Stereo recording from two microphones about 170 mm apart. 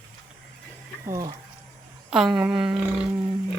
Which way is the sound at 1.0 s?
20° right (ahead or behind).